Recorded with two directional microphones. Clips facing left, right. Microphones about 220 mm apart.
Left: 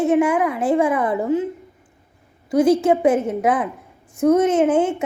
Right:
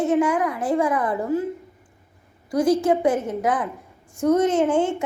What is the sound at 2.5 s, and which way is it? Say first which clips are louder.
A woman's voice: left 3 dB; 25° left (ahead or behind).